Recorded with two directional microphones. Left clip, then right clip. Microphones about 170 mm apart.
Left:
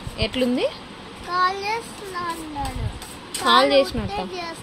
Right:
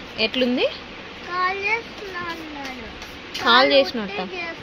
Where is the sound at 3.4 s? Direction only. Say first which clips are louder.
Right 1 dB; 10° left (ahead or behind).